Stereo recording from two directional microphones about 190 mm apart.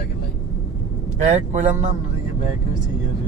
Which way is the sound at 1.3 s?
40° right (ahead or behind).